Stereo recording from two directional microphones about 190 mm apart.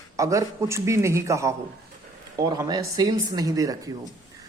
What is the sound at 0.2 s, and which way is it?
A man's voice, 15° right (ahead or behind).